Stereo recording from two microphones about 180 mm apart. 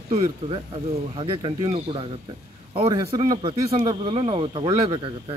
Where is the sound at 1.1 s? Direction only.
30° right (ahead or behind).